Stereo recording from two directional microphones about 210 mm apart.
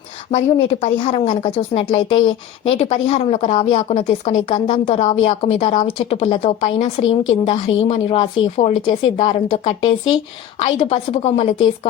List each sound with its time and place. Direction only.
0.3 s speech: 30° left (ahead or behind)